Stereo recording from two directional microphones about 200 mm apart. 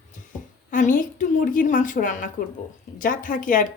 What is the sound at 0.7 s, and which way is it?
A woman's voice, 40° left (ahead or behind).